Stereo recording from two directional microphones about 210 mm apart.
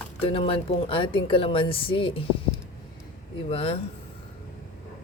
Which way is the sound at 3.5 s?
25° left (ahead or behind).